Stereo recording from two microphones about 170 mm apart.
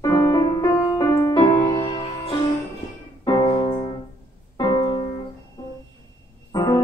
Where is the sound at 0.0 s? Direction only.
20° left (ahead or behind).